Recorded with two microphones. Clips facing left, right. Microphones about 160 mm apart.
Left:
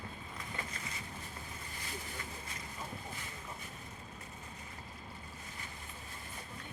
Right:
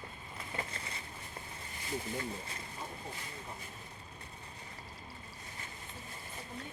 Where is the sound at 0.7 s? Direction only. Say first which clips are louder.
Right 1 dB; 30° right (ahead or behind).